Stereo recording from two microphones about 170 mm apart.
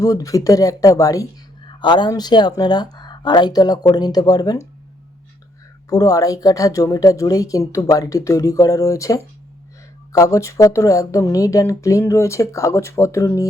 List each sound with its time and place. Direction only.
0.0 s a man's voice: 20° left (ahead or behind)
5.9 s a man's voice: 20° left (ahead or behind)